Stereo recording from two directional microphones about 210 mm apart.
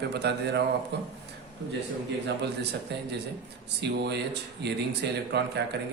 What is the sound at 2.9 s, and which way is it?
Speech, 55° right (ahead or behind).